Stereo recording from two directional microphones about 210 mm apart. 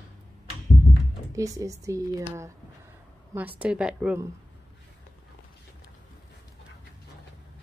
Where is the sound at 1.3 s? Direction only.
15° right (ahead or behind).